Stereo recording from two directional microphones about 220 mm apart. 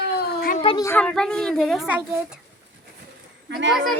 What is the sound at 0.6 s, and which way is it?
A woman's voice, 15° left (ahead or behind).